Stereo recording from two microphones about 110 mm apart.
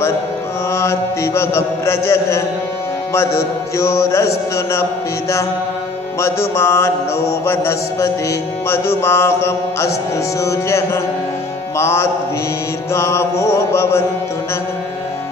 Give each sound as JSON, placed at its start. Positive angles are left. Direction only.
{"t": 0.7, "sound": "mantra", "side_deg": 25}
{"t": 6.2, "sound": "mantra", "side_deg": 25}